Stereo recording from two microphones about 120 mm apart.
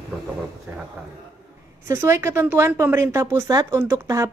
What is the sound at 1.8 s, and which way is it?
Speech, 20° right (ahead or behind).